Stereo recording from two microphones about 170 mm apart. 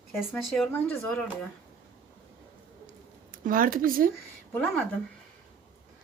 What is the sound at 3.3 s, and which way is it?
Speech, 55° right (ahead or behind).